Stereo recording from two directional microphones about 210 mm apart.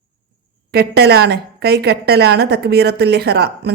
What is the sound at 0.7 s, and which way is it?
A woman's voice, 50° right (ahead or behind).